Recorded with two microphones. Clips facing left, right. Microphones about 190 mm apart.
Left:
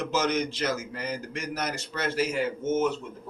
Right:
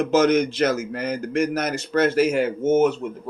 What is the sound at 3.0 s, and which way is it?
Speech, 70° right (ahead or behind).